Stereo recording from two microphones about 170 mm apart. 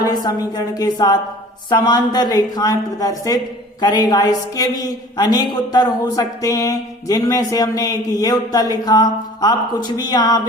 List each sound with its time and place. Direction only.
0.0 s a woman's voice: 25° left (ahead or behind)